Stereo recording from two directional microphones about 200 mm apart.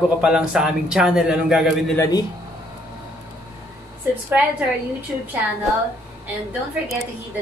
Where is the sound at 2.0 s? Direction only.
20° left (ahead or behind).